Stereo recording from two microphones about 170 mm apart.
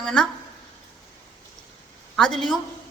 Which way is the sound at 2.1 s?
5° left (ahead or behind).